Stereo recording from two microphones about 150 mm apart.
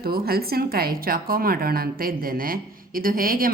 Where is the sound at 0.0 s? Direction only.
90° right.